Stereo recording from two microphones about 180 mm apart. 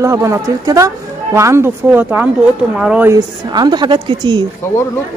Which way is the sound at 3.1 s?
25° right (ahead or behind).